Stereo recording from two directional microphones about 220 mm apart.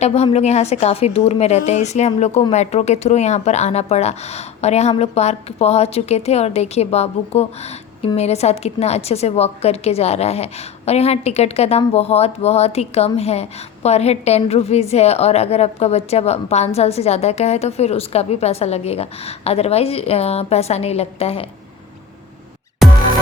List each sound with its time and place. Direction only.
0.0 s a woman's voice: 30° left (ahead or behind)